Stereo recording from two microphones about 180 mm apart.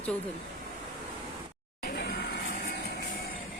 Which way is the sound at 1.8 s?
50° left (ahead or behind).